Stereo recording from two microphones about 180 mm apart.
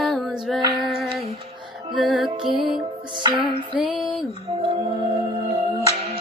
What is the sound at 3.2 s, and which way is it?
Music, 25° right (ahead or behind).